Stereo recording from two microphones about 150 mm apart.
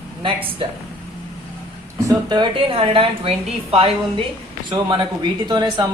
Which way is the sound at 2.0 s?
30° right (ahead or behind).